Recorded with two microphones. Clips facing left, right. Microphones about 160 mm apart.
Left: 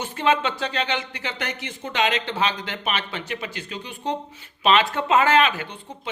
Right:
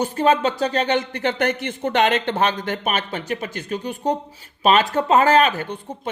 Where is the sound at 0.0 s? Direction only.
40° right (ahead or behind).